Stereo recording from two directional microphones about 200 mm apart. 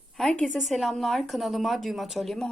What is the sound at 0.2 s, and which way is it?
A woman's voice, centre (ahead or behind).